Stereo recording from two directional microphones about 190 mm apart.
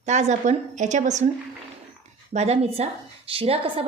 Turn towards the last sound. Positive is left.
turn(degrees=-30)  # may be behind; listen again after turning